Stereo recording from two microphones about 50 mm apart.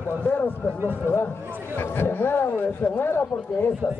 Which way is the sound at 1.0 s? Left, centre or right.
Left.